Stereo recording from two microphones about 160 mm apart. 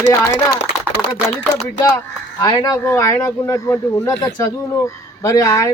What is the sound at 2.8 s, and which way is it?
Speech, 15° left (ahead or behind).